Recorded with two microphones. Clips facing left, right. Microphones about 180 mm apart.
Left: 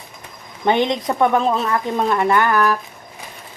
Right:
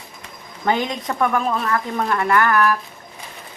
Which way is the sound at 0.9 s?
25° left (ahead or behind).